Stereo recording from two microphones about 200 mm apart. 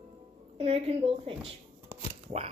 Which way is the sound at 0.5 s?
30° right (ahead or behind).